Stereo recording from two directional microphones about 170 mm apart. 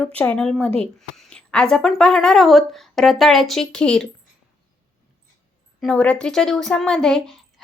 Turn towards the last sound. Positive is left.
turn(degrees=5)  # may be behind; listen again after turning